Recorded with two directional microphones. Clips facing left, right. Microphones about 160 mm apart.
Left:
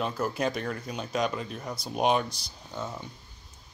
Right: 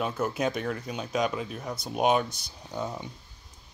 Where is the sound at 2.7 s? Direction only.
15° right (ahead or behind).